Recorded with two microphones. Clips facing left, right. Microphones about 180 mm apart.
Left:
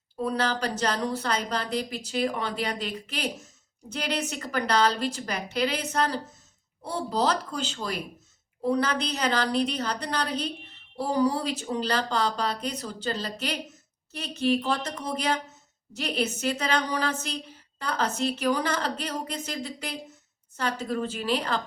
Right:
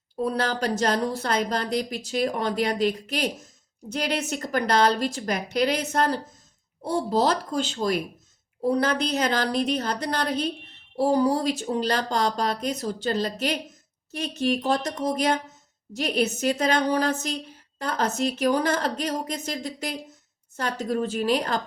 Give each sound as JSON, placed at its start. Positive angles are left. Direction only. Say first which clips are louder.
{"t": 0.2, "sound": "a woman's voice", "louder": "right 2 dB", "side_deg": -40}
{"t": 14.6, "sound": "a woman's voice", "louder": "right 5 dB", "side_deg": -40}